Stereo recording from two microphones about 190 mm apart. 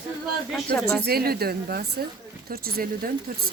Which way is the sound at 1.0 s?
55° right (ahead or behind).